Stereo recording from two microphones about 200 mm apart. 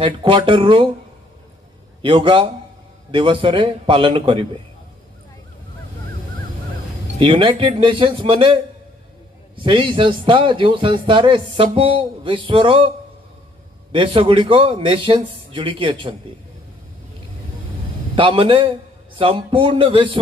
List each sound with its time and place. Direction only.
0.0 s a man's voice: 25° right (ahead or behind)
2.0 s a man's voice: 25° right (ahead or behind)
7.2 s a man's voice: 25° right (ahead or behind)
9.6 s a man's voice: 25° right (ahead or behind)
13.9 s a man's voice: 25° right (ahead or behind)
18.1 s a man's voice: 25° right (ahead or behind)